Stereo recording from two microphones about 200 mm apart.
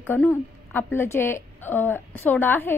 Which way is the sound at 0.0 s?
10° left (ahead or behind).